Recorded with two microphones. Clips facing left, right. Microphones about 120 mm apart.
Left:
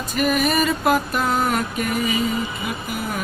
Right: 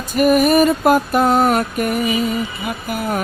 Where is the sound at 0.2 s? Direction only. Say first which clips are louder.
Right 7 dB; 50° right (ahead or behind).